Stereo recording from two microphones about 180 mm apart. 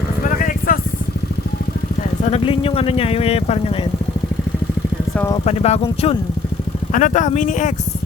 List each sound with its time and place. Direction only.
0.3 s vehicle: 50° left (ahead or behind)
2.2 s speech: 35° left (ahead or behind)
5.5 s speech: 35° left (ahead or behind)
6.9 s speech: 45° left (ahead or behind)